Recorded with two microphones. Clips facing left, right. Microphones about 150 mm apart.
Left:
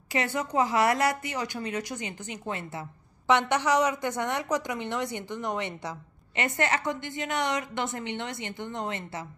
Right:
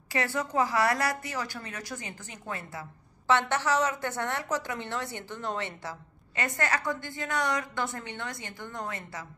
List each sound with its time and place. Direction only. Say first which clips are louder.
0.1 s a woman's voice: left 1 dB; 20° left (ahead or behind)